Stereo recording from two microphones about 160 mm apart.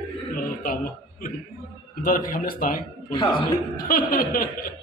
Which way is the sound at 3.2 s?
30° left (ahead or behind).